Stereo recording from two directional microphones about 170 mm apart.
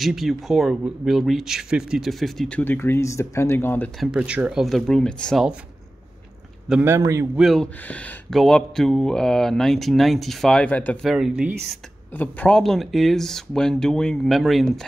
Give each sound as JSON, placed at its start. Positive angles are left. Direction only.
{"t": 0.0, "sound": "speech", "side_deg": 0}
{"t": 4.0, "sound": "speech", "side_deg": -5}
{"t": 6.7, "sound": "speech", "side_deg": -15}
{"t": 7.3, "sound": "speech", "side_deg": 0}
{"t": 12.1, "sound": "speech", "side_deg": 10}